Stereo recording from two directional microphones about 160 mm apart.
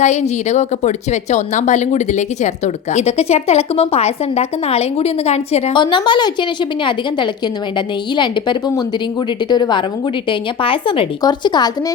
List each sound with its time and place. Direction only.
0.0 s a woman's voice: 45° left (ahead or behind); by 6.3 s 30° left (ahead or behind)
8.1 s a woman's voice: 30° left (ahead or behind)